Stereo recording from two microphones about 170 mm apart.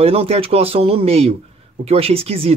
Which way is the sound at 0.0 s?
35° right (ahead or behind).